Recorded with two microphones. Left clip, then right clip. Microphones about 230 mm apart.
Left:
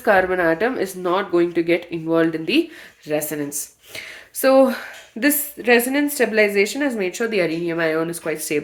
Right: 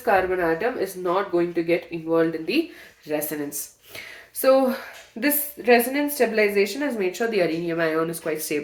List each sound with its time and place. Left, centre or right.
0.0 s speech: left
3.1 s a woman's voice: left